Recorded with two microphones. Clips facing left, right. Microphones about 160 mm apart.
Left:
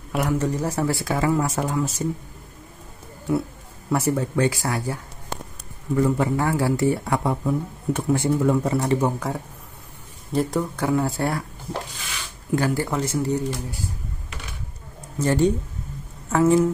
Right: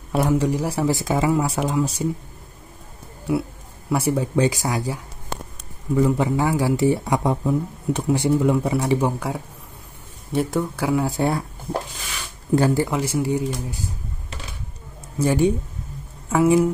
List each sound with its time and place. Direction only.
0.1 s speech: 30° right (ahead or behind)
0.4 s speech: 10° right (ahead or behind)
3.9 s speech: 10° right (ahead or behind)
12.5 s speech: 25° right (ahead or behind)
12.8 s speech: 10° right (ahead or behind)
15.1 s speech: 10° right (ahead or behind)